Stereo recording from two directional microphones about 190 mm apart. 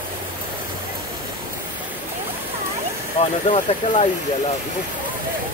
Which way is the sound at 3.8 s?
30° left (ahead or behind).